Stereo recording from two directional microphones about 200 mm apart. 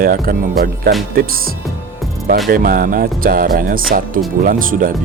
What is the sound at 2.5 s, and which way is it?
Speech, 45° right (ahead or behind).